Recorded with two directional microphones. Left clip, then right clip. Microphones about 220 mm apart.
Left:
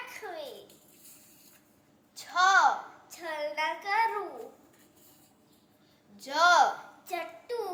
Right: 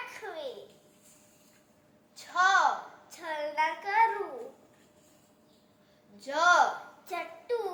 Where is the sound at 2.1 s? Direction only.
15° left (ahead or behind).